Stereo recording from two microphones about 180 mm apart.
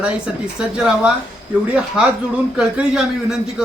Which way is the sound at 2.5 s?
5° right (ahead or behind).